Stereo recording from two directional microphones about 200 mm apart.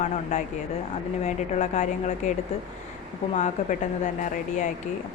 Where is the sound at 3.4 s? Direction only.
35° left (ahead or behind).